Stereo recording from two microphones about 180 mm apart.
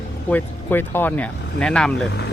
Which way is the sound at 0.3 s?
10° left (ahead or behind).